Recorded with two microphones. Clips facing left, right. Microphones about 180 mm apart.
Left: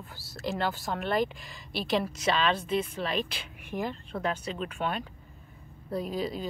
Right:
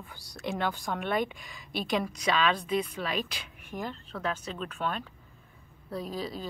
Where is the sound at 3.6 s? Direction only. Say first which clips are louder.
Left 4 dB; 10° left (ahead or behind).